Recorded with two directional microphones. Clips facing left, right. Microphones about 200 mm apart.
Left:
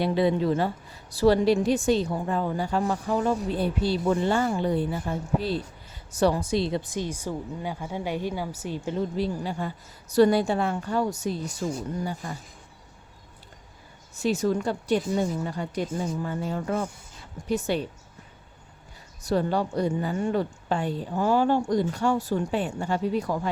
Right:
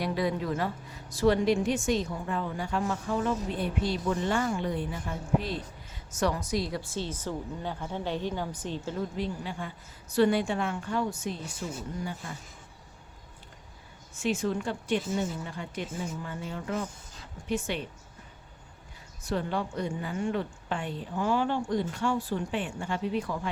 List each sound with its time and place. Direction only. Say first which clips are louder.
0.0 s a woman's voice: left 6 dB; 25° left (ahead or behind)
9.1 s a woman's voice: left 5 dB; 35° left (ahead or behind)
14.2 s a woman's voice: left 5 dB; 40° left (ahead or behind)
19.2 s a woman's voice: left 6 dB; 40° left (ahead or behind)